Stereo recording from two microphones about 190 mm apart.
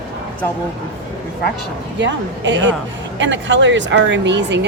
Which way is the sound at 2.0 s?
75° right (ahead or behind).